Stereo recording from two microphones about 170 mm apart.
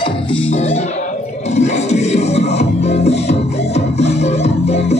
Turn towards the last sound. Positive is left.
turn(degrees=40)  # may be behind; listen again after turning